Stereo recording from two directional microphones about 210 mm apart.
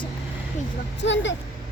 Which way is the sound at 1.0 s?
60° left (ahead or behind).